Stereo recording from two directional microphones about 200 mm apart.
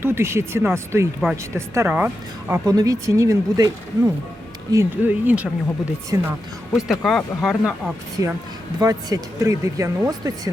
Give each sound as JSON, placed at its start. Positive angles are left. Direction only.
{"t": 0.0, "sound": "speech", "side_deg": -10}
{"t": 6.7, "sound": "speech", "side_deg": 0}
{"t": 8.2, "sound": "a woman's voice", "side_deg": 25}
{"t": 8.8, "sound": "speech", "side_deg": -15}